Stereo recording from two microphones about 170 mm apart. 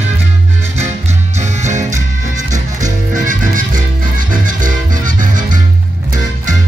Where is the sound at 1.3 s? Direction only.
45° right (ahead or behind).